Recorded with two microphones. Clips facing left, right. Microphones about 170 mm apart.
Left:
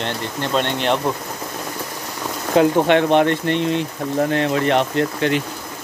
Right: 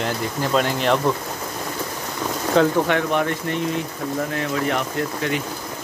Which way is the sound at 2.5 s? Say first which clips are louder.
Left 4 dB; 15° left (ahead or behind).